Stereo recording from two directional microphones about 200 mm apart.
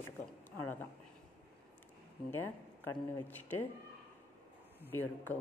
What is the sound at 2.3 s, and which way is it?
A woman's voice, 10° left (ahead or behind).